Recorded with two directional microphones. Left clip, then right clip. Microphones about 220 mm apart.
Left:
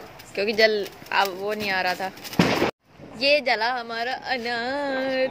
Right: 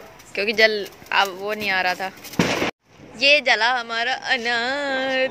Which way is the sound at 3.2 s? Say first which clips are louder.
Right 4 dB; 5° right (ahead or behind).